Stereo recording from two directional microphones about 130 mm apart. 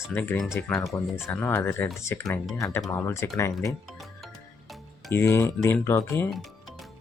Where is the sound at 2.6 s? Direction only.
25° left (ahead or behind).